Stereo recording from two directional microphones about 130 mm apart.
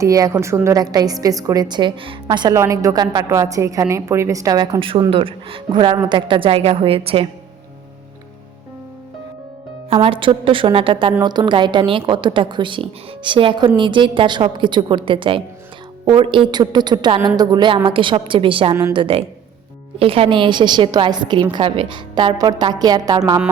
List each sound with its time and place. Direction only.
0.0 s a woman's voice: 25° right (ahead or behind); by 7.3 s 45° right (ahead or behind)
9.9 s a woman's voice: 45° right (ahead or behind)
18.7 s a woman's voice: 20° right (ahead or behind)
18.9 s a woman's voice: 45° right (ahead or behind)